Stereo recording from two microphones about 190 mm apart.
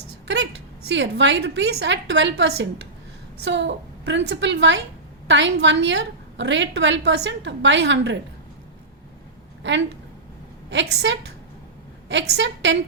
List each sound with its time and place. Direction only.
0.9 s a woman's voice: 70° right (ahead or behind)
10.7 s a woman's voice: 70° right (ahead or behind)